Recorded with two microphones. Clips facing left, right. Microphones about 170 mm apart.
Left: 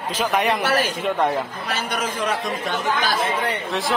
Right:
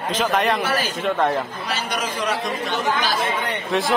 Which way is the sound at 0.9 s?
10° left (ahead or behind).